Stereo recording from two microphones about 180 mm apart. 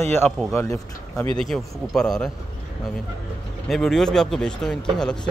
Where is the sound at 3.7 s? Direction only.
Centre (ahead or behind).